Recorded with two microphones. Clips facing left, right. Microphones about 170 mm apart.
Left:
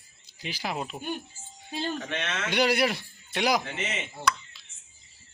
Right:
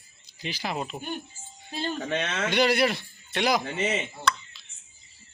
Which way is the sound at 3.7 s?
35° right (ahead or behind).